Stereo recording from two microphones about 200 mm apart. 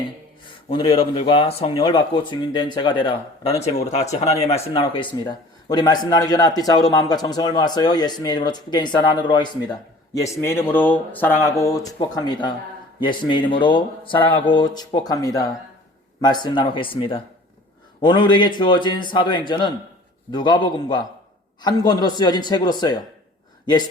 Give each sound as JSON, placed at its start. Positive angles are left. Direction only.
{"t": 0.4, "sound": "speech", "side_deg": 25}
{"t": 10.4, "sound": "speech", "side_deg": 10}